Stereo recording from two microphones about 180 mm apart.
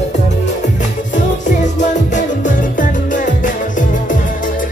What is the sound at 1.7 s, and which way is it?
Music, 45° left (ahead or behind).